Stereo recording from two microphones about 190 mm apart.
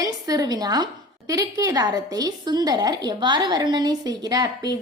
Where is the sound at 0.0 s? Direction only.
20° right (ahead or behind).